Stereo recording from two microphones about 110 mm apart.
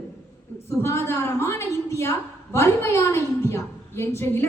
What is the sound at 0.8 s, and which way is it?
A woman's voice, 25° left (ahead or behind).